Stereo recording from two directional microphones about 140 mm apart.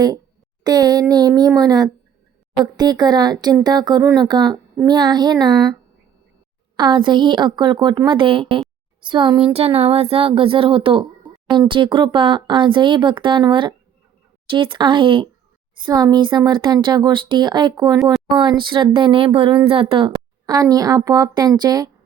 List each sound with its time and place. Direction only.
0.6 s speech: 30° right (ahead or behind)
6.7 s speech: 35° right (ahead or behind)